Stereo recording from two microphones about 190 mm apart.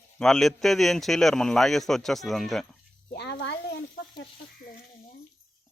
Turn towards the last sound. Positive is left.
turn(degrees=60)  # may be behind; listen again after turning